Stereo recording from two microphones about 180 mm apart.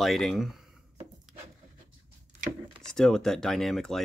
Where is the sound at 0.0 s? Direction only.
Centre (ahead or behind).